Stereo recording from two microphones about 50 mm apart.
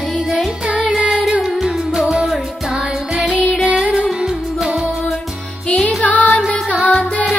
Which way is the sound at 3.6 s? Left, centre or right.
Right.